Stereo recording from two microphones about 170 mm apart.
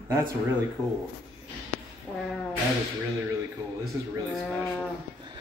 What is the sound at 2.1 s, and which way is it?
Brass instrument, 5° right (ahead or behind).